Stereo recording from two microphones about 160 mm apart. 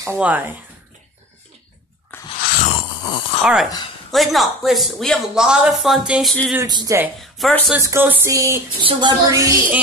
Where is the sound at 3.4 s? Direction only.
Centre (ahead or behind).